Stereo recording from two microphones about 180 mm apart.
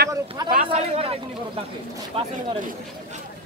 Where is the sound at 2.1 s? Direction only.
30° right (ahead or behind).